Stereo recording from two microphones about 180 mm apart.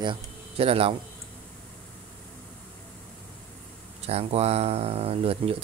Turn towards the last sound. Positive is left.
turn(degrees=-35)  # may be behind; listen again after turning